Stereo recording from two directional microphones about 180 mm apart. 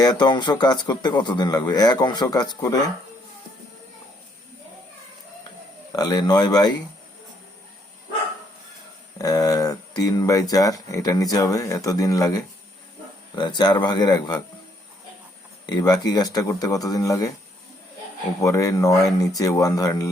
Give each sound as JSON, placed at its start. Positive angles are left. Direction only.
{"t": 0.0, "sound": "speech", "side_deg": 20}
{"t": 5.9, "sound": "speech", "side_deg": 20}
{"t": 9.1, "sound": "speech", "side_deg": 20}
{"t": 15.6, "sound": "speech", "side_deg": 20}
{"t": 18.3, "sound": "speech", "side_deg": 15}